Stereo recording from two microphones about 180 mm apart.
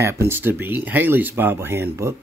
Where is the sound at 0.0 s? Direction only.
15° right (ahead or behind).